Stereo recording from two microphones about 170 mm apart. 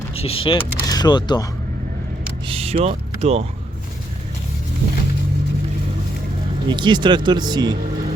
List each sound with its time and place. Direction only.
0.2 s speech: 35° left (ahead or behind)
2.5 s speech: 35° right (ahead or behind)
6.7 s speech: 25° right (ahead or behind)